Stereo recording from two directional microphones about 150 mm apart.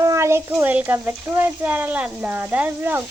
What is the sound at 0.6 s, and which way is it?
Speech, 10° right (ahead or behind).